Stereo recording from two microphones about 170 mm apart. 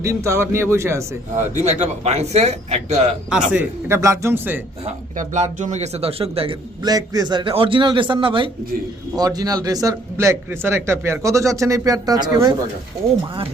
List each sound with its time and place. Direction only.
0.0 s a man's voice: 15° right (ahead or behind)
1.6 s a man's voice: 40° right (ahead or behind)
3.5 s a man's voice: 10° right (ahead or behind)
5.1 s a man's voice: 45° right (ahead or behind); by 12.5 s 20° right (ahead or behind)